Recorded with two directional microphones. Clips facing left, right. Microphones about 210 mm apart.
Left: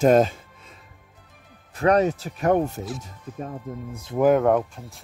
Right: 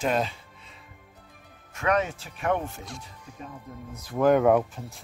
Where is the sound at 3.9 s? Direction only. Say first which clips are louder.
Left 5 dB; 25° left (ahead or behind).